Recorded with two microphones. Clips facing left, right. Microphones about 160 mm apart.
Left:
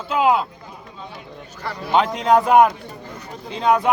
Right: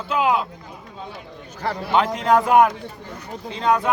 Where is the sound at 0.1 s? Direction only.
25° left (ahead or behind).